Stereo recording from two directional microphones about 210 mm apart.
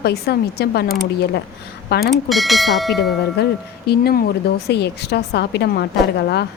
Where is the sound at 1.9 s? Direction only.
50° left (ahead or behind).